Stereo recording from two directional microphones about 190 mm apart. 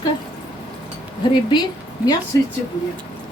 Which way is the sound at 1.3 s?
20° left (ahead or behind).